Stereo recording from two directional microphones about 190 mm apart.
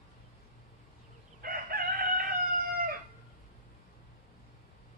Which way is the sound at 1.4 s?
50° right (ahead or behind).